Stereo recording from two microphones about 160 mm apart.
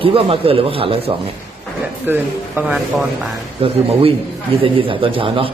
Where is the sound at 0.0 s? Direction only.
35° right (ahead or behind).